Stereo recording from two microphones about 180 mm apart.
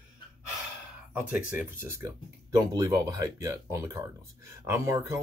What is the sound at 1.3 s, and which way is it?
Speech, 10° right (ahead or behind).